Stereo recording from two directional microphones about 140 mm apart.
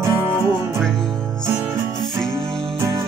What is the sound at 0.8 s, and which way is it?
Music, 5° left (ahead or behind).